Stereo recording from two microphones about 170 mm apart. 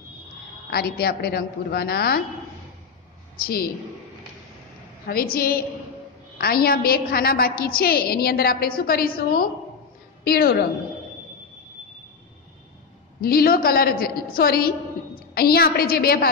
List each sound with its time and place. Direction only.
0.7 s a woman's voice: 65° left (ahead or behind)
3.3 s a woman's voice: 60° left (ahead or behind)
5.0 s a woman's voice: 60° left (ahead or behind)
13.2 s a woman's voice: 60° left (ahead or behind)